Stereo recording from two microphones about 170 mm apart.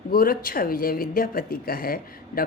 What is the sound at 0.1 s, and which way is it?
Speech, 60° left (ahead or behind).